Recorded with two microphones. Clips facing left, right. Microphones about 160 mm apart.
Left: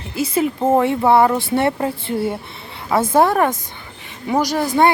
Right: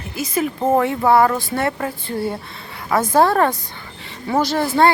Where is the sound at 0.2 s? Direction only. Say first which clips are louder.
Left 3 dB; 30° left (ahead or behind).